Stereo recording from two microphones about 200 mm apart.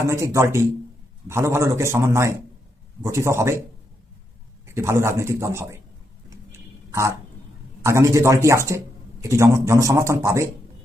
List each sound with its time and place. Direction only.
0.0 s speech: 15° right (ahead or behind)
4.6 s speech: 15° right (ahead or behind)
6.3 s a sound: 15° right (ahead or behind)
7.9 s speech: 15° right (ahead or behind)